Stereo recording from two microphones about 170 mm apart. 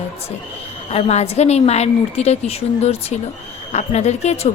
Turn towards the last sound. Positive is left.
turn(degrees=40)  # may be behind; listen again after turning